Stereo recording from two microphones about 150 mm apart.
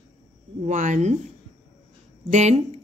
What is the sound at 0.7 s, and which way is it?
Speech, 55° right (ahead or behind).